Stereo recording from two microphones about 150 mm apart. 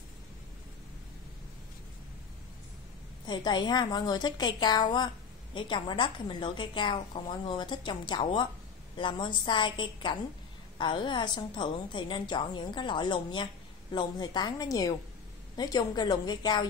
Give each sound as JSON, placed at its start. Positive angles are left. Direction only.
{"t": 3.3, "sound": "a woman's voice", "side_deg": 30}